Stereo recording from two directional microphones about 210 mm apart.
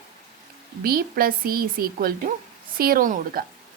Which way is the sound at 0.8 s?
45° right (ahead or behind).